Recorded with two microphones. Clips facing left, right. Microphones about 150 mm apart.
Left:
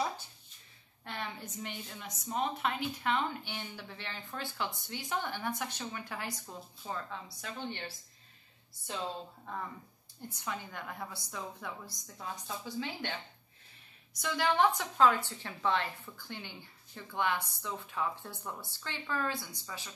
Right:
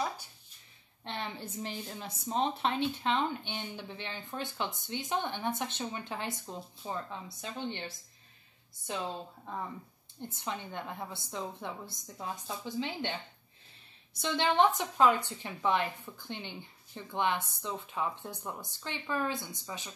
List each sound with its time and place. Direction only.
1.0 s a woman's voice: 25° right (ahead or behind)
10.2 s a woman's voice: 25° right (ahead or behind)